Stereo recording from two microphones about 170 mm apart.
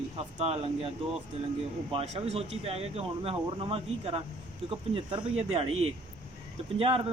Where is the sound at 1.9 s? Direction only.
40° right (ahead or behind).